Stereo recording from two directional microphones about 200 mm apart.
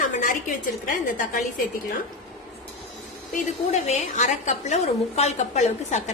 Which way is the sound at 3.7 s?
35° left (ahead or behind).